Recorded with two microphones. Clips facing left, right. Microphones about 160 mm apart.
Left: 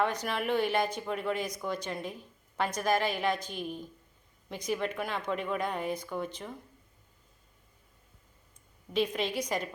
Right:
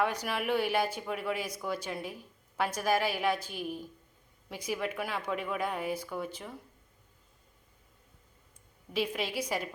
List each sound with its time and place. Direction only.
0.0 s speech: 10° right (ahead or behind)
8.9 s speech: 5° right (ahead or behind)